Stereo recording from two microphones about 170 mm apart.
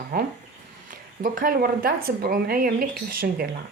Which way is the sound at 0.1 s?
60° right (ahead or behind).